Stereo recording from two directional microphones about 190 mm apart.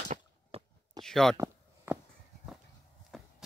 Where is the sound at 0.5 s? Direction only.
30° right (ahead or behind).